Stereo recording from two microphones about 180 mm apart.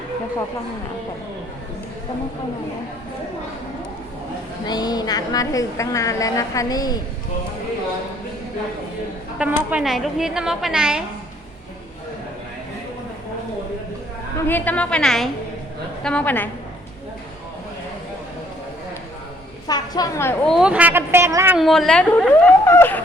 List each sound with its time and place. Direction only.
4.6 s a woman's voice: 20° left (ahead or behind)
9.4 s a woman's voice: 10° right (ahead or behind)
14.4 s a woman's voice: 10° left (ahead or behind)
19.6 s a woman's voice: 20° left (ahead or behind)
20.5 s speech: 5° right (ahead or behind)
21.6 s a woman's voice: centre (ahead or behind)